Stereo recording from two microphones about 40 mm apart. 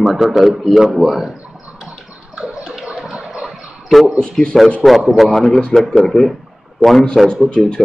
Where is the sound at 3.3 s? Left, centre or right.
Centre.